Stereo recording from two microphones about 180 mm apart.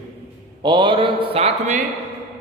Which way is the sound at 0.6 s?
25° right (ahead or behind).